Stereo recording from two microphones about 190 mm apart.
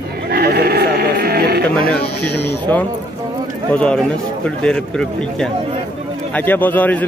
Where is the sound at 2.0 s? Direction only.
60° left (ahead or behind).